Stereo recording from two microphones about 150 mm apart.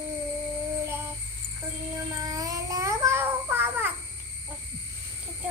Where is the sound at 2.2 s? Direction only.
25° right (ahead or behind).